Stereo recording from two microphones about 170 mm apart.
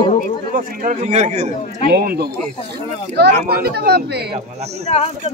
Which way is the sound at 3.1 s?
80° right.